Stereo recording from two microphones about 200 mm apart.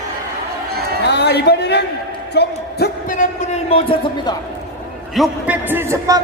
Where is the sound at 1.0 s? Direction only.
55° left (ahead or behind); by 4.3 s 30° left (ahead or behind).